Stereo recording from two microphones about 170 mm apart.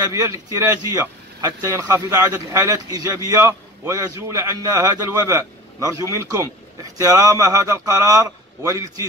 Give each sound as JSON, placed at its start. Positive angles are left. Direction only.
{"t": 0.1, "sound": "a man's voice", "side_deg": -20}